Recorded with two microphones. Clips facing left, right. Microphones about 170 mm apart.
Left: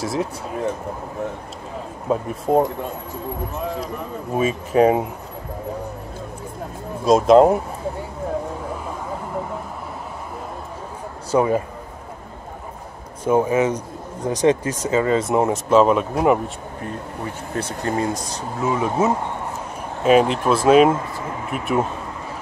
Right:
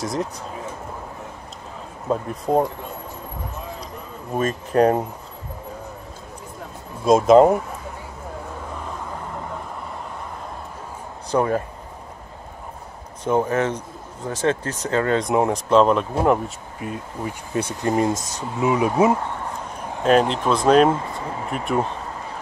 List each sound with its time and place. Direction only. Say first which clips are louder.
0.0 s speech: left 2 dB; 5° left (ahead or behind)
2.0 s speech: left 2 dB; 5° left (ahead or behind)
4.4 s speech: left 2 dB; 5° left (ahead or behind)
7.1 s speech: even; centre (ahead or behind)
11.3 s speech: left 2 dB; 10° left (ahead or behind)
13.2 s speech: left 3 dB; 10° left (ahead or behind)
17.6 s speech: right 2 dB; 20° right (ahead or behind)
18.1 s speech: even; 45° right (ahead or behind)
18.6 s speech: right 2 dB; 15° right (ahead or behind)
20.0 s speech: left 2 dB; 5° left (ahead or behind)